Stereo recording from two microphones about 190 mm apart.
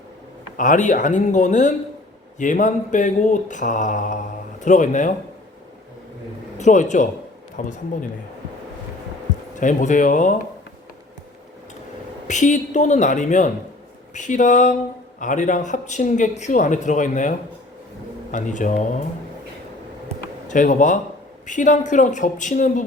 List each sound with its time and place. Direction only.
0.5 s speech: 40° left (ahead or behind)
6.6 s a man's voice: 40° left (ahead or behind)
9.6 s speech: 40° left (ahead or behind)
12.3 s speech: 40° left (ahead or behind)
20.5 s speech: 40° left (ahead or behind)